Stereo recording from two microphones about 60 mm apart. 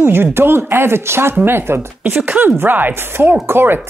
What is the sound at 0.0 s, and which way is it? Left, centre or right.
Speech, right.